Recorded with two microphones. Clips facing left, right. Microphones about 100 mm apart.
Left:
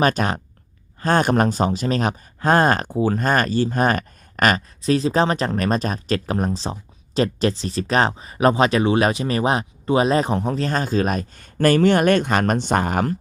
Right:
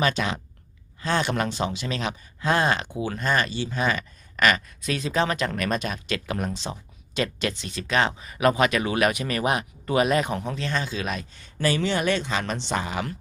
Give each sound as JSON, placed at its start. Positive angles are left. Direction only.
{"t": 0.0, "sound": "speech", "side_deg": 45}